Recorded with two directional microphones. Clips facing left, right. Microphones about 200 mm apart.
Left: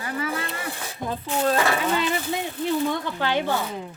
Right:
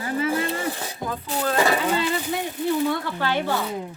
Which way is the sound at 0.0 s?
25° right (ahead or behind).